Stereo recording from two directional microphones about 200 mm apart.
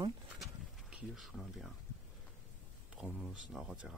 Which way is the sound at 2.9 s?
5° right (ahead or behind).